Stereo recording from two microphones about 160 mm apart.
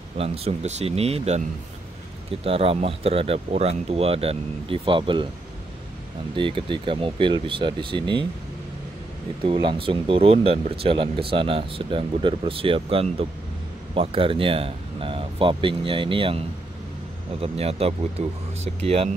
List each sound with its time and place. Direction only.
0.2 s speech: 40° right (ahead or behind)
2.4 s speech: 35° right (ahead or behind)
6.3 s speech: 30° right (ahead or behind)
9.4 s speech: 30° right (ahead or behind)